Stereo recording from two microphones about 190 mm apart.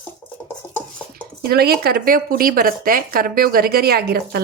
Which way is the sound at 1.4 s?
55° right (ahead or behind).